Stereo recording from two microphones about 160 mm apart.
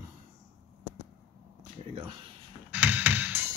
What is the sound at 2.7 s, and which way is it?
Music, 10° right (ahead or behind).